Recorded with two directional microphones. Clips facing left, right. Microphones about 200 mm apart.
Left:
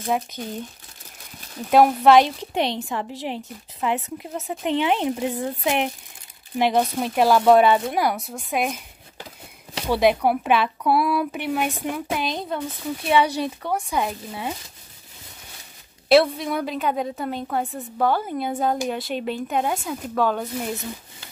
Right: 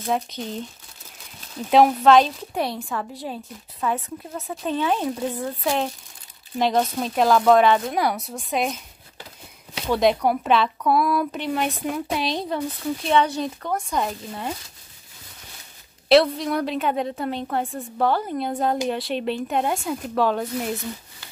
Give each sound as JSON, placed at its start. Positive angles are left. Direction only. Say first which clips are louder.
{"t": 1.7, "sound": "speech", "louder": "even", "side_deg": 5}
{"t": 8.6, "sound": "a sound", "louder": "even", "side_deg": 15}
{"t": 9.8, "sound": "speech", "louder": "left 1 dB", "side_deg": 5}
{"t": 16.1, "sound": "speech", "louder": "even", "side_deg": 5}